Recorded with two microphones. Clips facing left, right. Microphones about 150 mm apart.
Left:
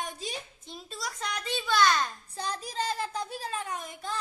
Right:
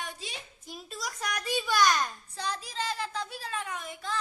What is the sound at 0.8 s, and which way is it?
A child's voice, centre (ahead or behind).